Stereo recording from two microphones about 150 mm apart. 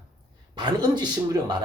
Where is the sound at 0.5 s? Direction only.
30° right (ahead or behind).